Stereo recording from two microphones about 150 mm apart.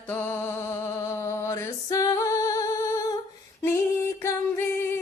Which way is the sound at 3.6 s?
20° left (ahead or behind).